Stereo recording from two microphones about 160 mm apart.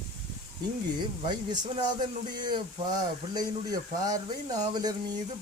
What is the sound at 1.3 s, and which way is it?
Speech, 25° right (ahead or behind).